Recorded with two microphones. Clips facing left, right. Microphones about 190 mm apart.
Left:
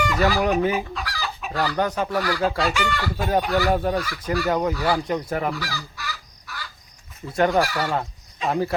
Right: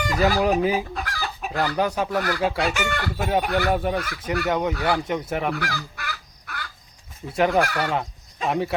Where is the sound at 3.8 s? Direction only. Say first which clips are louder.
Left 1 dB; 5° right (ahead or behind).